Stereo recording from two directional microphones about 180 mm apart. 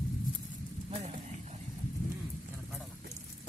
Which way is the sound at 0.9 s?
35° right (ahead or behind).